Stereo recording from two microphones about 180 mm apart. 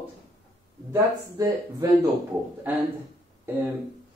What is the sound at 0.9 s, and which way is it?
Speech, 20° right (ahead or behind).